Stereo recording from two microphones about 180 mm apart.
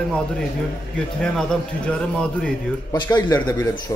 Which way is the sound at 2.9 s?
20° left (ahead or behind).